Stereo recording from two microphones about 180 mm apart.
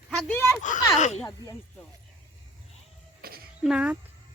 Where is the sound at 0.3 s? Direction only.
10° left (ahead or behind).